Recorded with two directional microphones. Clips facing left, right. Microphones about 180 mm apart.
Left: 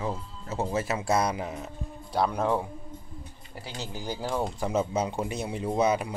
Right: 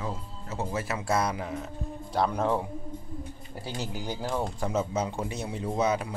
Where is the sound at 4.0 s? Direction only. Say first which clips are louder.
Left 2 dB; centre (ahead or behind).